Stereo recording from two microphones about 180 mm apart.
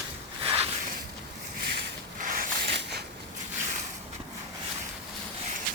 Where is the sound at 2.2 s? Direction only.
50° right (ahead or behind).